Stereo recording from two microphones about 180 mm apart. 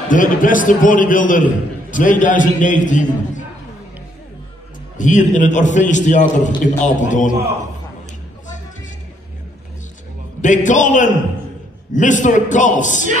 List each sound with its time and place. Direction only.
0.1 s a man's voice: 45° left (ahead or behind)
4.9 s a man's voice: 45° left (ahead or behind)
10.4 s a man's voice: 45° left (ahead or behind)